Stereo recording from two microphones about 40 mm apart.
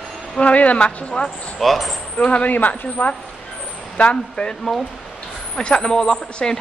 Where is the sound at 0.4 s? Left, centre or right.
Left.